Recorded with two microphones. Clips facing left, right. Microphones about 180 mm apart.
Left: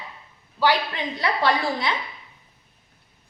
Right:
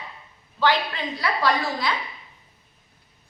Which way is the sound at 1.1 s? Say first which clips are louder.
Left 1 dB; 25° left (ahead or behind).